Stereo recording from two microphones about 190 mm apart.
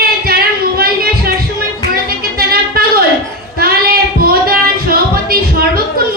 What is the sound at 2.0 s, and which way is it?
Music, 50° right (ahead or behind).